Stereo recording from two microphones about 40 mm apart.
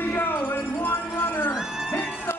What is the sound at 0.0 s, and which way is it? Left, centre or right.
Music, left.